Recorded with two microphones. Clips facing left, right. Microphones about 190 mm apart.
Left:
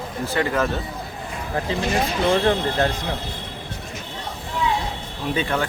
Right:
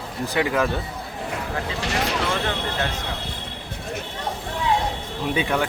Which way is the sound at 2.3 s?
40° left (ahead or behind).